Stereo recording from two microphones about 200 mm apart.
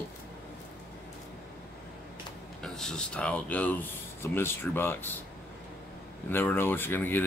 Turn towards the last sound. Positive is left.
turn(degrees=10)  # may be behind; listen again after turning